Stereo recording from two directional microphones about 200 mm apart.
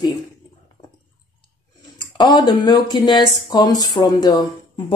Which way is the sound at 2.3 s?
20° left (ahead or behind).